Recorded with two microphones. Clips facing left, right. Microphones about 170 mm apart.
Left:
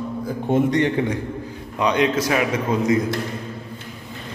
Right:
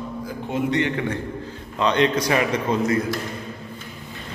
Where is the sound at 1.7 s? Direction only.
10° left (ahead or behind).